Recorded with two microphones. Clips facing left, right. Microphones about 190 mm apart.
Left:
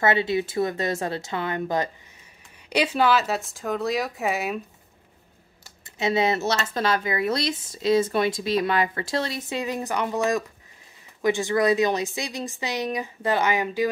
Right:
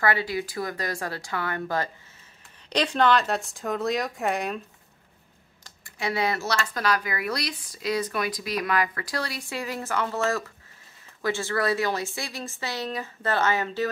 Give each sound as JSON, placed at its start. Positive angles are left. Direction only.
{"t": 0.0, "sound": "speech", "side_deg": 25}
{"t": 2.7, "sound": "speech", "side_deg": 10}
{"t": 5.9, "sound": "speech", "side_deg": 20}